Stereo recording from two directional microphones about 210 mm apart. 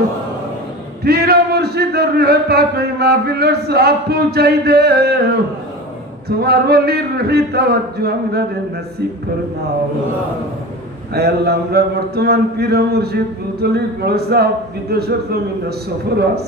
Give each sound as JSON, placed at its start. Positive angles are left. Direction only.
{"t": 1.0, "sound": "a man's voice", "side_deg": -50}
{"t": 6.2, "sound": "a man's voice", "side_deg": -50}
{"t": 11.1, "sound": "a man's voice", "side_deg": -50}